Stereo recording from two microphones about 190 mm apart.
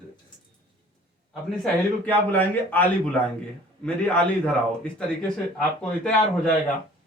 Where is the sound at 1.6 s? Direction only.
10° left (ahead or behind).